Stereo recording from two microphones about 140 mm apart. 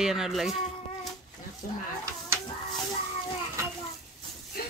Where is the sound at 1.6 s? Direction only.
80° left.